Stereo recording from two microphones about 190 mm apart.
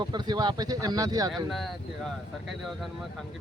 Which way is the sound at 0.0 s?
25° right (ahead or behind).